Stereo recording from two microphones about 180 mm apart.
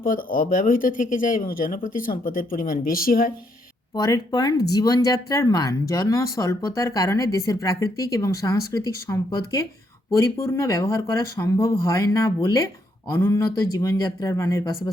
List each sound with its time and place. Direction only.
0.0 s speech: 50° left (ahead or behind)
3.9 s speech: 20° left (ahead or behind)